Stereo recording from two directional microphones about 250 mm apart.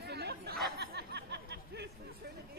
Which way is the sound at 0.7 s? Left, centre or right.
Right.